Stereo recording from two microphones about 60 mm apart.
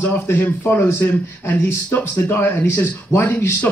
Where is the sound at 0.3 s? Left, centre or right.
Left.